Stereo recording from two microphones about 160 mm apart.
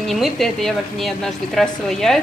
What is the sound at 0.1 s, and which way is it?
A woman's voice, centre (ahead or behind).